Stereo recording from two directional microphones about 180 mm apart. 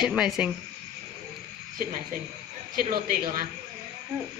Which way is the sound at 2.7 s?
50° right (ahead or behind).